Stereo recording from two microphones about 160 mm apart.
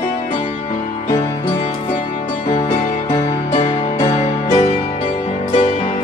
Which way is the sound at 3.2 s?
40° left (ahead or behind).